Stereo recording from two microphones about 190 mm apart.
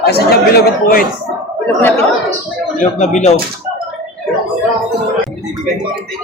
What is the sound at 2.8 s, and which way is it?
Speech, 40° left (ahead or behind).